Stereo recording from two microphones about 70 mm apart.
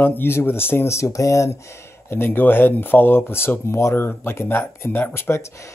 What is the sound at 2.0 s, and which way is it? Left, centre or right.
Speech, left.